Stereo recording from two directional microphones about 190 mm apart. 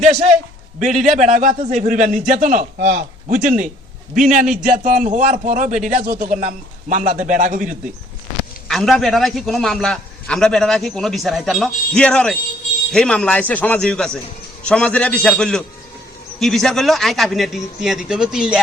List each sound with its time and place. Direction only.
0.0 s a man's voice: 40° right (ahead or behind)
2.7 s a man's voice: 55° right (ahead or behind)
8.6 s a man's voice: centre (ahead or behind)